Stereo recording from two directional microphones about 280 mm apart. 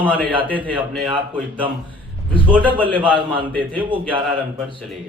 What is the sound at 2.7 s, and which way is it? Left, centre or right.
Speech, centre.